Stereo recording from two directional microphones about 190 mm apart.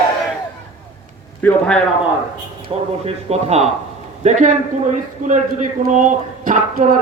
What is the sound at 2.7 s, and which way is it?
A man's voice, 30° right (ahead or behind).